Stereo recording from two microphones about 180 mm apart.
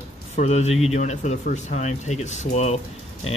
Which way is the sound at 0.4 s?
35° left (ahead or behind).